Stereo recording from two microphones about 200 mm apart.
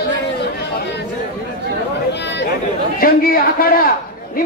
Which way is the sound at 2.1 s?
60° left (ahead or behind).